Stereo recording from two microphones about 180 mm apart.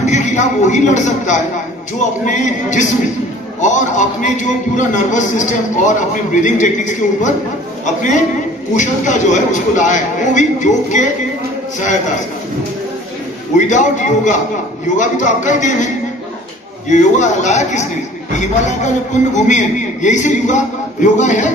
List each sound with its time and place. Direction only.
0.0 s a man's voice: 40° left (ahead or behind)
13.6 s a man's voice: 45° left (ahead or behind)
16.9 s a man's voice: 40° left (ahead or behind)